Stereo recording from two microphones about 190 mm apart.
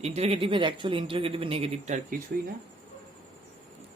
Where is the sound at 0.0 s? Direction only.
35° right (ahead or behind).